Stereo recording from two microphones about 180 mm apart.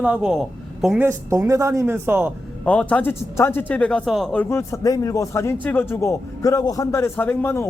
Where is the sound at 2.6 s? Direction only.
5° left (ahead or behind).